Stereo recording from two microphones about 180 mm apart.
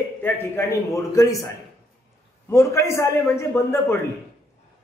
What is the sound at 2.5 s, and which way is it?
A man's voice, 15° left (ahead or behind).